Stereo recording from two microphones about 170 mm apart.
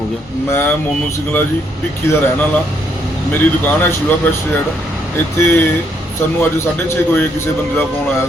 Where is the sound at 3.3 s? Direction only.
10° left (ahead or behind).